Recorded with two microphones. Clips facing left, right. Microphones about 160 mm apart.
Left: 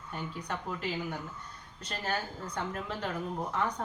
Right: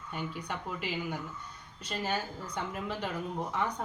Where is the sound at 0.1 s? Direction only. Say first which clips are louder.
Even; 5° right (ahead or behind).